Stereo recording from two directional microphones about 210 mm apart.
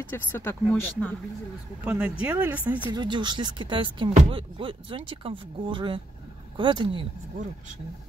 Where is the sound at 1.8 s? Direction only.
5° right (ahead or behind).